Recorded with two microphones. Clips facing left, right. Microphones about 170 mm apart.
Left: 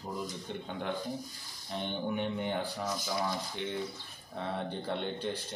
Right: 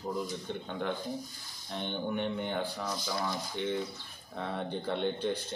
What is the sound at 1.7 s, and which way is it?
Speech, 5° left (ahead or behind).